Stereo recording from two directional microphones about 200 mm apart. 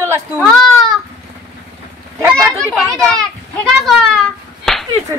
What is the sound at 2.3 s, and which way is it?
Speech, centre (ahead or behind).